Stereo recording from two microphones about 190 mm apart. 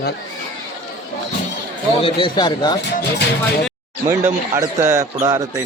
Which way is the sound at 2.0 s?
25° left (ahead or behind).